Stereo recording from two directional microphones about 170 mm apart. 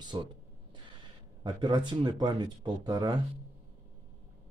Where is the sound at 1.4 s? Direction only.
25° right (ahead or behind).